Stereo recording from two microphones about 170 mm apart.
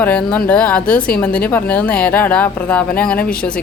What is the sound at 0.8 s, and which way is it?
Speech, 55° left (ahead or behind).